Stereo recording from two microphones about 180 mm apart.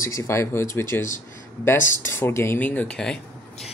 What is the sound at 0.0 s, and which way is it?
Speech, 15° left (ahead or behind).